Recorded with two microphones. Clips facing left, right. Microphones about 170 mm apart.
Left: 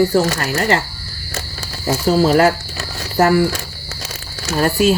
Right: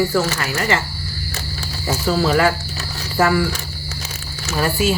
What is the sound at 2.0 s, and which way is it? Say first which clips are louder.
Speech: left 4 dB; 40° left (ahead or behind).